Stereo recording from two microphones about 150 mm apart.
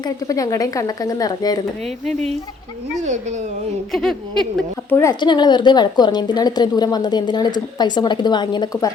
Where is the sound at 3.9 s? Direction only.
Centre (ahead or behind).